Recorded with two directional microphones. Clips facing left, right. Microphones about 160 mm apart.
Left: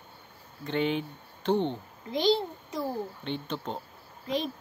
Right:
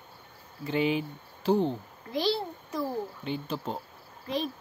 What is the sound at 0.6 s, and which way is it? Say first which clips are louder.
Speech: right 1 dB; 5° right (ahead or behind).